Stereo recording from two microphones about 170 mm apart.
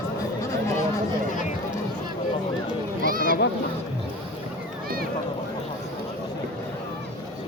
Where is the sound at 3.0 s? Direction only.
55° right (ahead or behind).